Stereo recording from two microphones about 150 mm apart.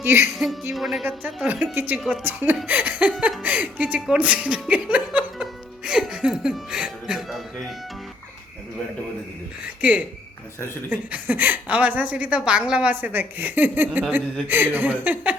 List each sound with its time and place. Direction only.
0.0 s speech: 15° right (ahead or behind)
0.3 s speech: centre (ahead or behind)
2.0 s speech: centre (ahead or behind)
2.2 s speech: 10° right (ahead or behind)
9.8 s speech: 10° right (ahead or behind)